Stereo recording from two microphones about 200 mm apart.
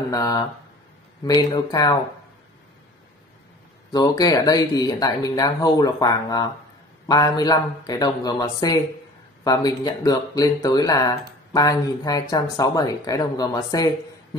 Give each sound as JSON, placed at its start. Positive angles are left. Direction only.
{"t": 0.1, "sound": "speech", "side_deg": 15}
{"t": 3.9, "sound": "speech", "side_deg": 20}